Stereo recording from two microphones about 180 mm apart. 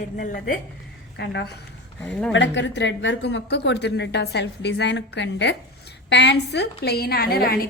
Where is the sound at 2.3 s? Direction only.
90° left.